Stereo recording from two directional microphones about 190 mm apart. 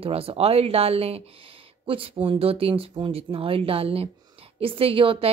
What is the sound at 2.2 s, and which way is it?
A woman's voice, 30° right (ahead or behind).